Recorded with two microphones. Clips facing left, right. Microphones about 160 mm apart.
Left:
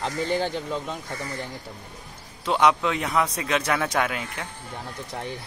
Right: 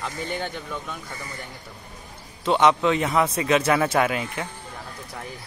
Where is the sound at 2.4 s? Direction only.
Centre (ahead or behind).